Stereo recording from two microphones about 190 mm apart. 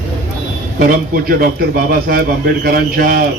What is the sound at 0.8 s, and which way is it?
Speech, 50° right (ahead or behind).